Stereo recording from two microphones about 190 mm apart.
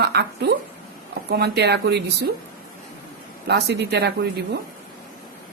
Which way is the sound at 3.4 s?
60° right (ahead or behind).